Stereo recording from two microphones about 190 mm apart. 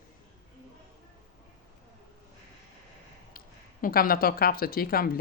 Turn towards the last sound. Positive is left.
turn(degrees=50)  # may be behind; listen again after turning